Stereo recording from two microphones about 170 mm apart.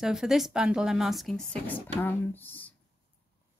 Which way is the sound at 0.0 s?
5° right (ahead or behind).